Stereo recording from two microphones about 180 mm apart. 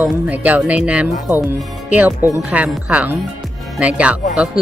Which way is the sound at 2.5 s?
5° right (ahead or behind).